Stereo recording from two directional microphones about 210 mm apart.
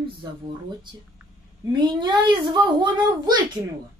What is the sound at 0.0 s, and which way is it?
Speech, 20° right (ahead or behind).